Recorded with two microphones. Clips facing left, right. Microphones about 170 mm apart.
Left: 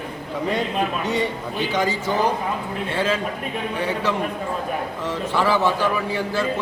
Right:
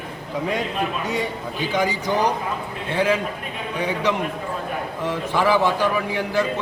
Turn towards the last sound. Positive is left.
turn(degrees=-15)  # may be behind; listen again after turning